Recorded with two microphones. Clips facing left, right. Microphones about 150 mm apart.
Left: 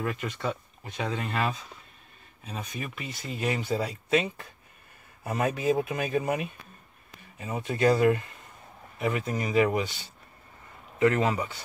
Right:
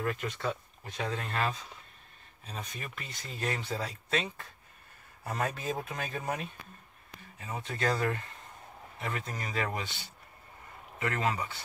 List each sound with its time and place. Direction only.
0.0 s speech: 5° left (ahead or behind)
11.0 s speech: 20° left (ahead or behind)